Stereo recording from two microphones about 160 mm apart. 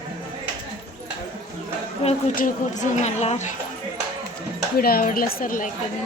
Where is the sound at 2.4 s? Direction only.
55° left (ahead or behind).